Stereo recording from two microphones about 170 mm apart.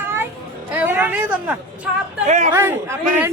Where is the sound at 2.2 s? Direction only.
45° right (ahead or behind).